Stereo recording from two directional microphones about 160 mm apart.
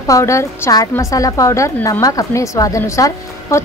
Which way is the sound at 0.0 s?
20° left (ahead or behind).